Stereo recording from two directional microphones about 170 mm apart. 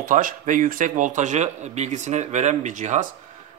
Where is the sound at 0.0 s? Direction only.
50° right (ahead or behind).